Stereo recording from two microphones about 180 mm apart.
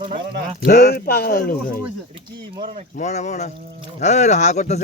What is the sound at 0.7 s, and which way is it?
Speech, 60° left (ahead or behind).